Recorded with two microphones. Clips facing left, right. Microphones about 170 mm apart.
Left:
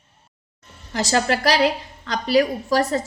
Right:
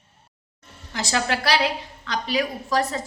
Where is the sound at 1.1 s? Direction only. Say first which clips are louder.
Left 3 dB; 40° left (ahead or behind).